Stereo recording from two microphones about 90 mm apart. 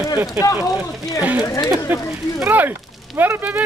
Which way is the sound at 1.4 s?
45° left (ahead or behind).